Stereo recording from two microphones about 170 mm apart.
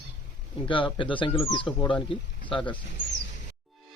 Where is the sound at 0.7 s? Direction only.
30° left (ahead or behind).